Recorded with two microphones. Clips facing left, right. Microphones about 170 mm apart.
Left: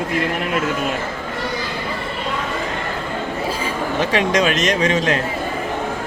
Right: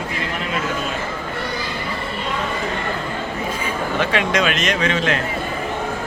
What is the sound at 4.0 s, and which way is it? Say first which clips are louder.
Speech: left 2 dB; 35° left (ahead or behind).